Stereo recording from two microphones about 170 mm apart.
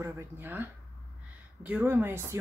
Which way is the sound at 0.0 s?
10° right (ahead or behind).